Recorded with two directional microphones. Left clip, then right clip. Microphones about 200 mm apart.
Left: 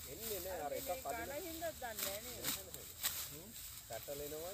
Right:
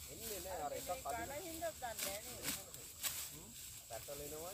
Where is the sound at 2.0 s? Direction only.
Centre (ahead or behind).